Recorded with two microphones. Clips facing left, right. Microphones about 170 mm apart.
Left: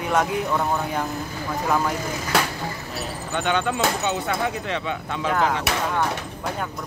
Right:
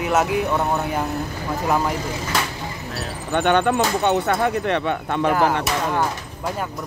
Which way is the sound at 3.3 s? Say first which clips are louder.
Right 6 dB; 55° right (ahead or behind).